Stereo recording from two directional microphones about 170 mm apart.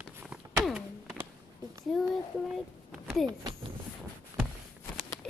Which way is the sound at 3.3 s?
25° right (ahead or behind).